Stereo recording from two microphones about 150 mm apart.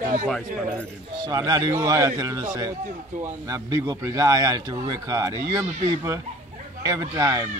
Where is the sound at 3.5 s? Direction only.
25° right (ahead or behind).